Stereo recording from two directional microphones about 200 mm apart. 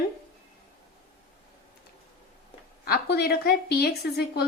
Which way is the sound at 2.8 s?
50° left (ahead or behind).